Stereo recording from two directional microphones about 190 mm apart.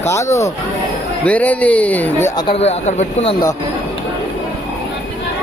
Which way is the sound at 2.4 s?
30° left (ahead or behind).